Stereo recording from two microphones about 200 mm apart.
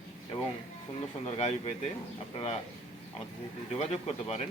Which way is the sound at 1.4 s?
35° left (ahead or behind).